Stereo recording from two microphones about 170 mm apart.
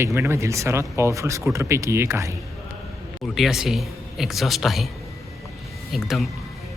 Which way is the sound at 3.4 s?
Centre (ahead or behind).